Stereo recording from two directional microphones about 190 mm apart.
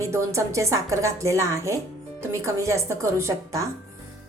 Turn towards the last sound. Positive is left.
turn(degrees=-15)  # may be behind; listen again after turning